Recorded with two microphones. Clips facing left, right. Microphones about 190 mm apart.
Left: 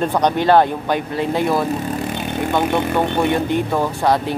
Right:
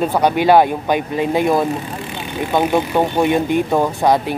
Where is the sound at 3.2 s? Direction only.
15° right (ahead or behind).